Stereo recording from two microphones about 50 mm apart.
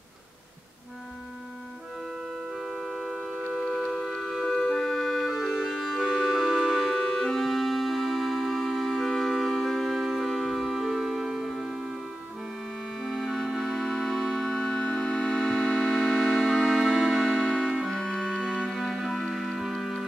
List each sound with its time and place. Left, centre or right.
2.5 s a sound: centre
3.5 s music: centre
4.5 s music: centre
7.4 s music: centre
13.0 s organ: centre
14.7 s music: centre
16.8 s music: centre
17.3 s music: centre
17.9 s organ: centre
18.7 s music: centre